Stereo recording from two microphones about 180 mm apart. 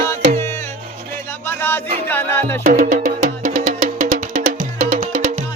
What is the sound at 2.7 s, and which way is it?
Music, 45° right (ahead or behind).